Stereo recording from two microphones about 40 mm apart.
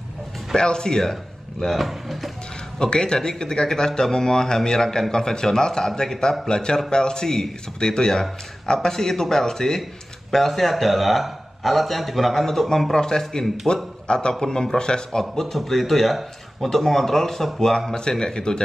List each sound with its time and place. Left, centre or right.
0.6 s speech: centre
1.6 s a man's voice: centre
2.8 s a man's voice: centre